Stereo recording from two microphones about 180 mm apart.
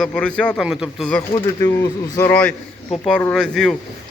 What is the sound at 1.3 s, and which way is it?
Speech, 20° left (ahead or behind).